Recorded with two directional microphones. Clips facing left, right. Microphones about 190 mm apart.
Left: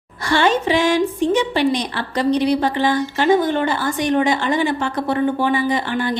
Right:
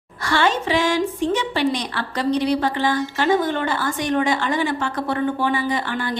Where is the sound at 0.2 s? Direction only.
15° left (ahead or behind).